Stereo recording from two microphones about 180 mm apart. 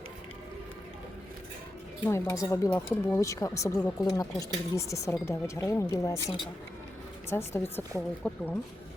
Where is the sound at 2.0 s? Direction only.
15° left (ahead or behind).